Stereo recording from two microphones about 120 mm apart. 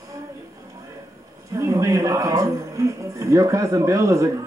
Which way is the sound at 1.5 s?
25° right (ahead or behind).